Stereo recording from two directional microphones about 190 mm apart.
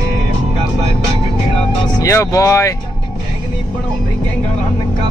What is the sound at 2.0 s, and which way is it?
Speech, 15° left (ahead or behind).